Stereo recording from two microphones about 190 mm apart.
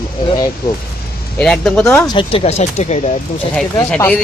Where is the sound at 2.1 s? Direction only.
30° left (ahead or behind).